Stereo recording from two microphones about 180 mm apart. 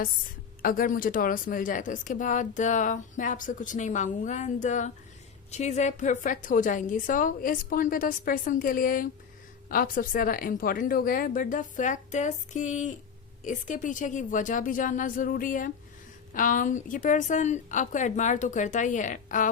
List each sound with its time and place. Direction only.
0.6 s speech: 50° left (ahead or behind)